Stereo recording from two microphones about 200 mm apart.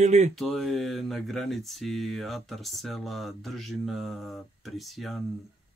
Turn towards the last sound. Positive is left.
turn(degrees=0)  # may be behind; listen again after turning